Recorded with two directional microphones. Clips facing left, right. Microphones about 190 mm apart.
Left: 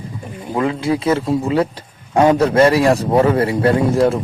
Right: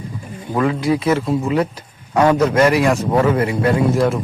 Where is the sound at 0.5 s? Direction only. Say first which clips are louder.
Right 1 dB; 25° left (ahead or behind).